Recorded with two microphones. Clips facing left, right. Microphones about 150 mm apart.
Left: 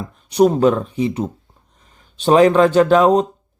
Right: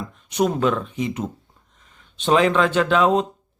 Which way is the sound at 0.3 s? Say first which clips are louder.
Left 7 dB; 35° left (ahead or behind).